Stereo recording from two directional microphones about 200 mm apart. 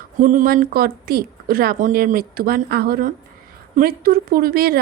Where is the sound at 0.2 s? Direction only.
40° right (ahead or behind).